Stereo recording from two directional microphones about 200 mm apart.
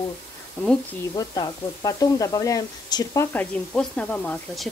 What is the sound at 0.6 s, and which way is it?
Speech, 5° left (ahead or behind).